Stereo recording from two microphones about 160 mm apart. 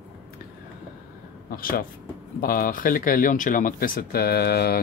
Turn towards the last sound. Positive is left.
turn(degrees=80)